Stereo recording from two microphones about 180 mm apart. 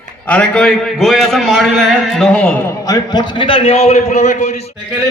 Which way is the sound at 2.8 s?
20° left (ahead or behind).